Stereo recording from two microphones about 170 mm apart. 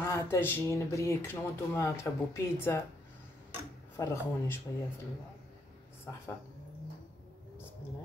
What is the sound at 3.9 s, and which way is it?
Speech, 15° left (ahead or behind).